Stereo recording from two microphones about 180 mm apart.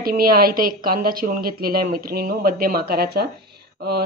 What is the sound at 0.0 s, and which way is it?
Speech, 55° right (ahead or behind).